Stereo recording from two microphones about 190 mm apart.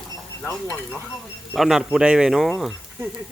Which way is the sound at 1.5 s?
Centre (ahead or behind).